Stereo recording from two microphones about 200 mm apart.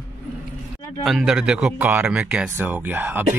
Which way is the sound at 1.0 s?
Centre (ahead or behind).